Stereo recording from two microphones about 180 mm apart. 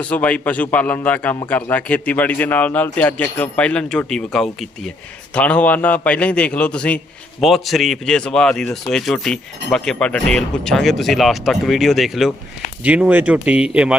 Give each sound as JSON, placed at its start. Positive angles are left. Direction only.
{"t": 0.1, "sound": "speech", "side_deg": 10}